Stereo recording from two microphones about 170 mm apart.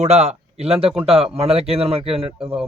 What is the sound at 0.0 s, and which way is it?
Speech, 40° right (ahead or behind).